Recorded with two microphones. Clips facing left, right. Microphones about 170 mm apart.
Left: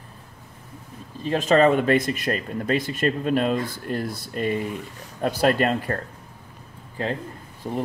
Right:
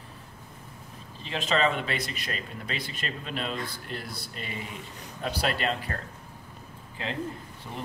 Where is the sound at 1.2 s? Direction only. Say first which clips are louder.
Left 9 dB; 45° left (ahead or behind).